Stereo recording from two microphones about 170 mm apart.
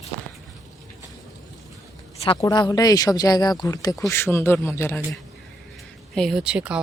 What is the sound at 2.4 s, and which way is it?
Speech, 20° left (ahead or behind).